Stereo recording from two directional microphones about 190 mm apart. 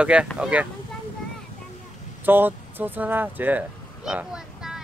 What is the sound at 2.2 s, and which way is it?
Speech, 10° right (ahead or behind).